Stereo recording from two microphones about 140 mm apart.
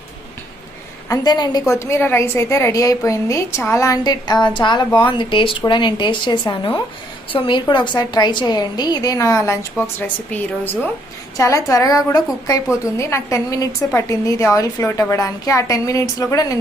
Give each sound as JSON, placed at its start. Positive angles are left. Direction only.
{"t": 1.0, "sound": "a woman's voice", "side_deg": 25}
{"t": 11.3, "sound": "a woman's voice", "side_deg": 25}